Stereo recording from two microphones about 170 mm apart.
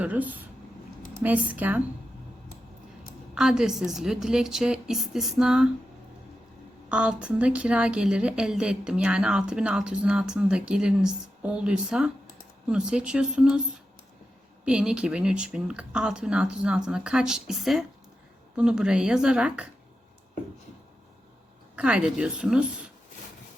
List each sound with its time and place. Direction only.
0.0 s speech: 10° right (ahead or behind)
3.3 s speech: 5° right (ahead or behind)
6.8 s speech: 5° right (ahead or behind)
14.6 s speech: 5° right (ahead or behind)
21.8 s speech: 5° right (ahead or behind)